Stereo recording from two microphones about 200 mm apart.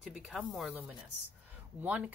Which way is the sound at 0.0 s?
Centre (ahead or behind).